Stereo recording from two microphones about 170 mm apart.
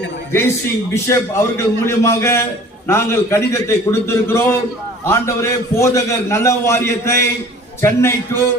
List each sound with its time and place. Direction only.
1.0 s a man's voice: 15° left (ahead or behind)